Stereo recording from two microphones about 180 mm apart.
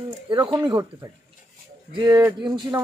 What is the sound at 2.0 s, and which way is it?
Speech, 20° right (ahead or behind).